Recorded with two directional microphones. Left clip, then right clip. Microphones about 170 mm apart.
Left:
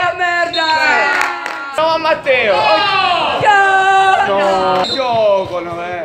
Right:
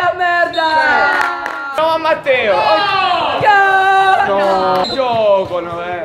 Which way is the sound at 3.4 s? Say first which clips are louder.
Even; 40° right (ahead or behind).